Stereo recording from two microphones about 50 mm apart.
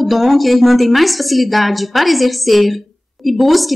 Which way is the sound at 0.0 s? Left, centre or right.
Centre.